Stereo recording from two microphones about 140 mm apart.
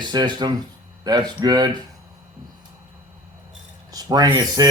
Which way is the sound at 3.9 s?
25° right (ahead or behind).